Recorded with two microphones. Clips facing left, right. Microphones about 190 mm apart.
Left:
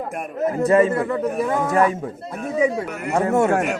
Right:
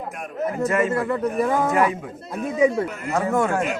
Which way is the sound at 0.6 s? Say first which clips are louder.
Left 5 dB; 30° left (ahead or behind).